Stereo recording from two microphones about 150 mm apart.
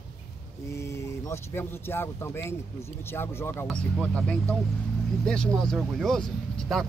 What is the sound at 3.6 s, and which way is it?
Speech, 5° left (ahead or behind).